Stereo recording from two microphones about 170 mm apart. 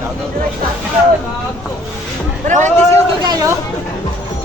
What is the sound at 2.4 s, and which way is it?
Speech, 45° right (ahead or behind).